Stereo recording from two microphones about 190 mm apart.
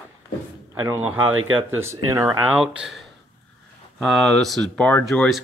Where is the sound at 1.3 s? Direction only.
90° right.